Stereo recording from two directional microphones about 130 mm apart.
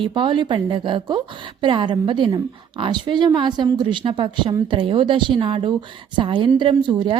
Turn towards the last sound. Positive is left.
turn(degrees=-35)  # may be behind; listen again after turning